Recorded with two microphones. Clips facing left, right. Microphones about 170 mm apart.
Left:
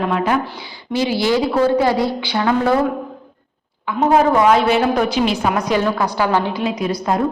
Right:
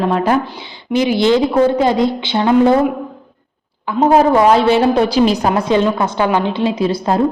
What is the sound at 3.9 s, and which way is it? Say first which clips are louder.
A woman's voice: right 3 dB; 30° right (ahead or behind).